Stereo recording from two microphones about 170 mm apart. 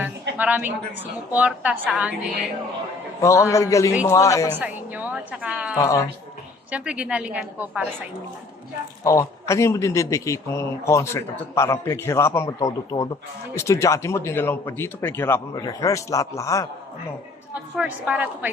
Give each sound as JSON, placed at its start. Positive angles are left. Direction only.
{"t": 0.0, "sound": "a sound", "side_deg": -10}
{"t": 1.3, "sound": "a woman's voice", "side_deg": -10}
{"t": 3.2, "sound": "a man's voice", "side_deg": 20}
{"t": 4.5, "sound": "a woman's voice", "side_deg": -10}
{"t": 5.8, "sound": "a man's voice", "side_deg": 20}
{"t": 6.7, "sound": "a woman's voice", "side_deg": -5}
{"t": 9.0, "sound": "a man's voice", "side_deg": 20}
{"t": 17.5, "sound": "a woman's voice", "side_deg": -10}